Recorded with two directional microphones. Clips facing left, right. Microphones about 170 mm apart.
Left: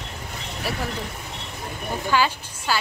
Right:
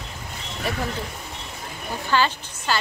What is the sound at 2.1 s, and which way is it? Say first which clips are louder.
Speech: right 1 dB; 10° left (ahead or behind).